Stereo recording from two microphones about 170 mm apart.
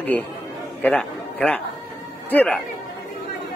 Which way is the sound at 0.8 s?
10° left (ahead or behind).